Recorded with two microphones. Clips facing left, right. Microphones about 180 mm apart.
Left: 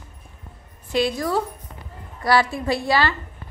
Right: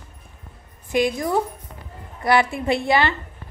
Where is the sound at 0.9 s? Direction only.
15° right (ahead or behind).